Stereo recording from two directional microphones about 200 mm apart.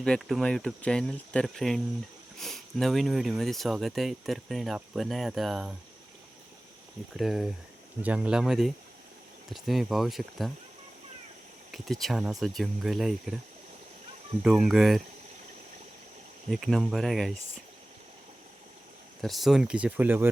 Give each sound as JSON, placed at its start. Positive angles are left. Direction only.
{"t": 0.0, "sound": "speech", "side_deg": 0}
{"t": 7.2, "sound": "speech", "side_deg": 0}
{"t": 11.7, "sound": "speech", "side_deg": 0}
{"t": 14.6, "sound": "speech", "side_deg": 0}
{"t": 16.5, "sound": "speech", "side_deg": 0}
{"t": 19.2, "sound": "speech", "side_deg": 0}